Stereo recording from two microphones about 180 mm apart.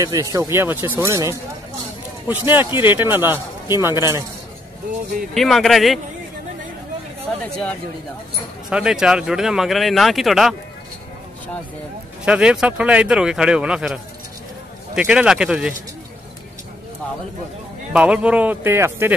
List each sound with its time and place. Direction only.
0.0 s a man's voice: 20° right (ahead or behind)
5.3 s speech: centre (ahead or behind)
8.6 s speech: 5° right (ahead or behind)
12.3 s speech: 5° right (ahead or behind)
15.0 s speech: 5° right (ahead or behind)
17.9 s a man's voice: 5° right (ahead or behind)